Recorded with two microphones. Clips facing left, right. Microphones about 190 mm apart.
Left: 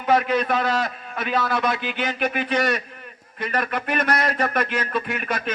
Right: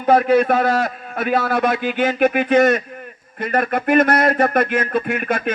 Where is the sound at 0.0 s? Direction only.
45° right (ahead or behind).